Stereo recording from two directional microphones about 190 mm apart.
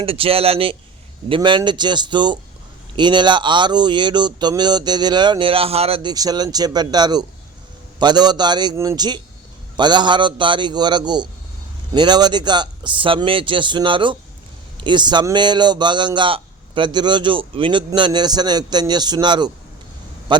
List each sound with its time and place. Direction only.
0.0 s a man's voice: 30° right (ahead or behind)